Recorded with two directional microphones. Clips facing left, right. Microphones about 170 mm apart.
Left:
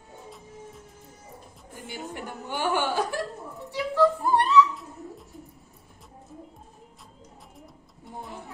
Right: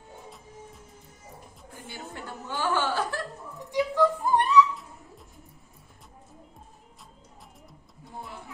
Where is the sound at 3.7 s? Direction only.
15° right (ahead or behind).